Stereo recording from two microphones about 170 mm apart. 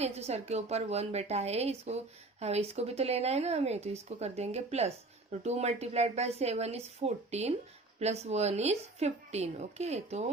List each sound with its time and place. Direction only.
0.0 s a woman's voice: 40° right (ahead or behind)